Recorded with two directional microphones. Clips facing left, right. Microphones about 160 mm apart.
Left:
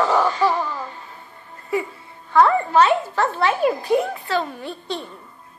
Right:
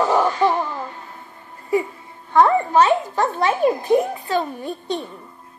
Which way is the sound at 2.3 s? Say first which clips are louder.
Right 1 dB; 20° right (ahead or behind).